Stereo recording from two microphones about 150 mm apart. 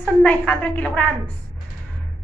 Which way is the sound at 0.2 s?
10° left (ahead or behind).